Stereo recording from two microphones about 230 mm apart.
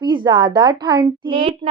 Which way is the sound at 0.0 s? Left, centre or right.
Right.